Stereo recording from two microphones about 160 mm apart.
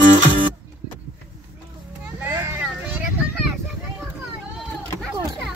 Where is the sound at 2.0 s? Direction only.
10° right (ahead or behind).